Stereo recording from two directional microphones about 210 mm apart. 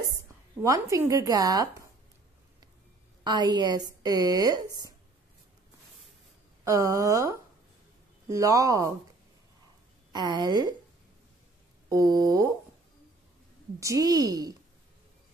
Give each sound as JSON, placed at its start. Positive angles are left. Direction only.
{"t": 0.6, "sound": "speech", "side_deg": -15}
{"t": 3.3, "sound": "speech", "side_deg": -20}
{"t": 6.6, "sound": "speech", "side_deg": -15}
{"t": 10.1, "sound": "a woman's voice", "side_deg": -20}
{"t": 11.9, "sound": "speech", "side_deg": -15}
{"t": 13.7, "sound": "speech", "side_deg": -15}